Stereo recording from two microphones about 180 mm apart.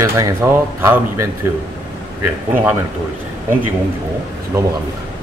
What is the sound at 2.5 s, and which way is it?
Speech, 10° right (ahead or behind).